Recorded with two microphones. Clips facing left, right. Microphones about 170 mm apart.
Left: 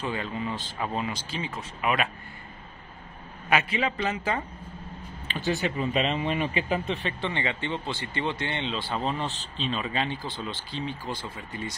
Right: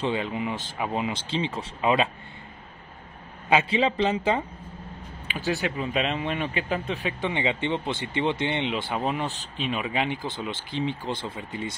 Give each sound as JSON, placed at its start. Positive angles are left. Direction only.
{"t": 0.0, "sound": "speech", "side_deg": -20}
{"t": 3.7, "sound": "speech", "side_deg": -25}
{"t": 5.3, "sound": "speech", "side_deg": 0}